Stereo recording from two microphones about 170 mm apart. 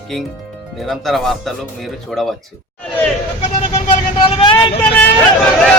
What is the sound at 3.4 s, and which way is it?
Speech, 35° left (ahead or behind).